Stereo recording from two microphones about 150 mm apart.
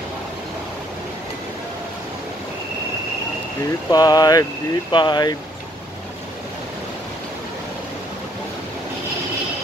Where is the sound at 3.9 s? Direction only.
25° left (ahead or behind).